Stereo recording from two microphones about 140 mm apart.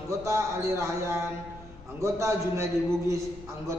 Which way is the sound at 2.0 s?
20° right (ahead or behind).